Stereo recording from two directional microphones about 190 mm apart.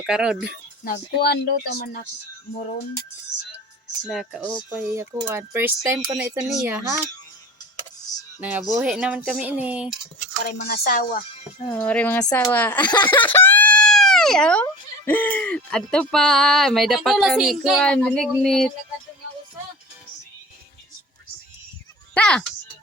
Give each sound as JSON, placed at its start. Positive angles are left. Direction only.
{"t": 0.0, "sound": "speech", "side_deg": -5}
{"t": 0.9, "sound": "speech", "side_deg": 55}
{"t": 4.1, "sound": "speech", "side_deg": 0}
{"t": 4.5, "sound": "speech", "side_deg": -15}
{"t": 6.5, "sound": "speech", "side_deg": 0}
{"t": 8.4, "sound": "speech", "side_deg": -10}
{"t": 10.4, "sound": "speech", "side_deg": 50}
{"t": 11.6, "sound": "speech", "side_deg": 10}
{"t": 22.1, "sound": "speech", "side_deg": 5}